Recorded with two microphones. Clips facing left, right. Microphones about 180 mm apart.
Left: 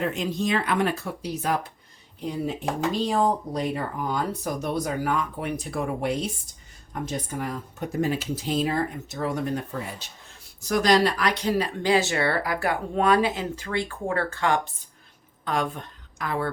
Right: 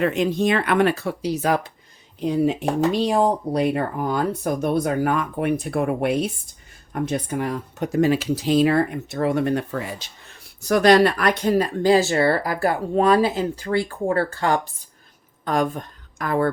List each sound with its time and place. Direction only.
0.0 s speech: 65° right (ahead or behind); by 1.7 s 90° right
2.3 s a woman's voice: 75° right (ahead or behind); by 16.5 s 50° right (ahead or behind)